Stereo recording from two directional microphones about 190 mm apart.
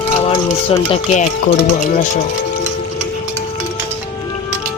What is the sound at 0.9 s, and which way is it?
Speech, 35° left (ahead or behind).